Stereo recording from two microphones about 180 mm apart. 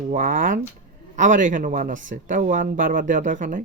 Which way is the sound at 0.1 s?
45° right (ahead or behind).